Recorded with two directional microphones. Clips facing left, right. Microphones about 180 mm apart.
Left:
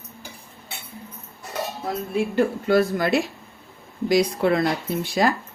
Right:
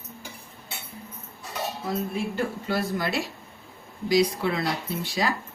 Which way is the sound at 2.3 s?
55° left (ahead or behind).